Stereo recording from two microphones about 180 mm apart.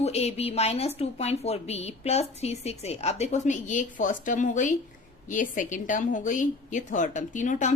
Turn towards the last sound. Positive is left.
turn(degrees=45)  # may be behind; listen again after turning